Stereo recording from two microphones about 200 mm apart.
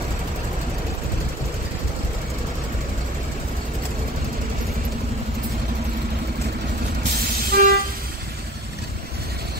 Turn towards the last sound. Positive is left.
turn(degrees=-45)  # may be behind; listen again after turning